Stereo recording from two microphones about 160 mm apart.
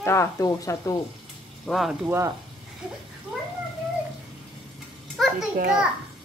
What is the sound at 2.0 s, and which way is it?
Speech, 15° right (ahead or behind).